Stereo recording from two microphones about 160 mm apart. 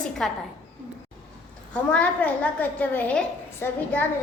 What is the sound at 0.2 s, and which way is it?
Speech, 5° left (ahead or behind).